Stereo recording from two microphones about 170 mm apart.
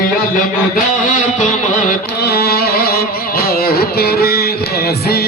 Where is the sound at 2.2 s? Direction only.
70° left (ahead or behind).